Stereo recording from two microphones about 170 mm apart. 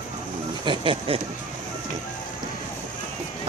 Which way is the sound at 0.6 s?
30° right (ahead or behind).